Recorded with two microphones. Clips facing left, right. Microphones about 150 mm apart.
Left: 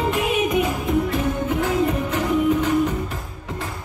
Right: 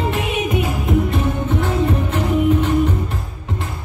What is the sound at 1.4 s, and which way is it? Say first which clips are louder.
Music: right 1 dB; 40° left (ahead or behind).